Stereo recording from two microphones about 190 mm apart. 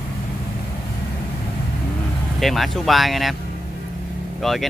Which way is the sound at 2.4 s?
Centre (ahead or behind).